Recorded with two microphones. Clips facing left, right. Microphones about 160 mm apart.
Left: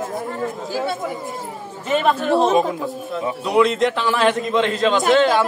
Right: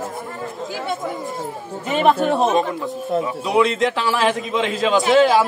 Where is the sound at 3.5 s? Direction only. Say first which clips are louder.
Left 2 dB; centre (ahead or behind).